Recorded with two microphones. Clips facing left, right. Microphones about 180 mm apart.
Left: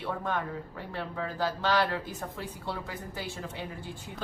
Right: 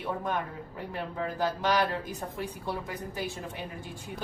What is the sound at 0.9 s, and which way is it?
A woman's voice, 15° right (ahead or behind).